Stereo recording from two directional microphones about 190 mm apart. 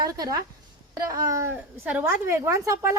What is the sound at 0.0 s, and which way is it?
A woman's voice, 20° right (ahead or behind).